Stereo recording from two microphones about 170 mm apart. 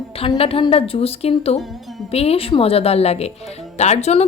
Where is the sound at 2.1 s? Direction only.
35° left (ahead or behind).